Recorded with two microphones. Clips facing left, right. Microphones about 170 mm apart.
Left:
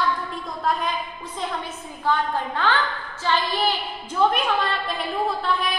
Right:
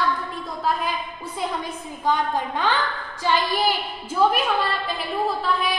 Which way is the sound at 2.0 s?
15° right (ahead or behind).